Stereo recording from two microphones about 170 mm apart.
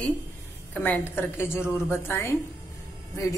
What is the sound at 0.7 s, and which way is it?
A woman's voice, 10° left (ahead or behind).